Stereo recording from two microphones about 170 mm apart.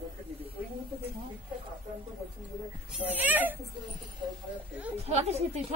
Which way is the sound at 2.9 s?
10° right (ahead or behind).